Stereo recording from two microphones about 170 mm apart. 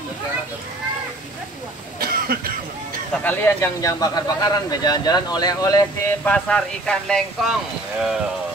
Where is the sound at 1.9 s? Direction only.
60° right (ahead or behind).